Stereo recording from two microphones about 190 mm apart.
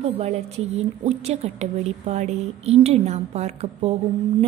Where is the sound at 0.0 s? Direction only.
35° right (ahead or behind).